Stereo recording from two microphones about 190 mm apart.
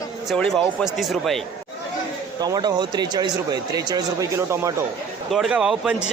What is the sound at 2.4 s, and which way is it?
Speech, 20° right (ahead or behind).